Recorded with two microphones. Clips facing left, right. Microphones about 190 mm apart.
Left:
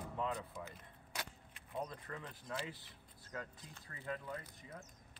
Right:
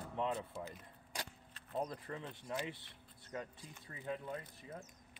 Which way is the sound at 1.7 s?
30° right (ahead or behind).